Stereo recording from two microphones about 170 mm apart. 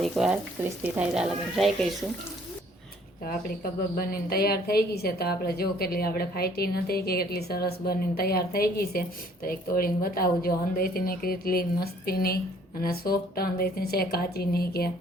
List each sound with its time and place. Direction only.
0.0 s speech: 5° right (ahead or behind)
4.1 s a woman's voice: 65° left (ahead or behind)